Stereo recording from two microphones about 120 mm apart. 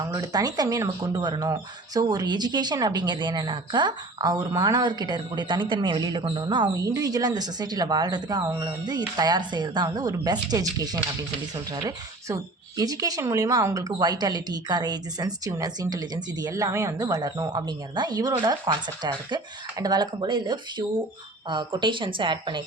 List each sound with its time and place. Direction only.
0.0 s speech: 30° right (ahead or behind)